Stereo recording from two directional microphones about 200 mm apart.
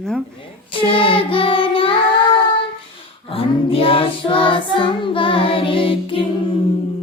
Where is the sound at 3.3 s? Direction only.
30° left (ahead or behind).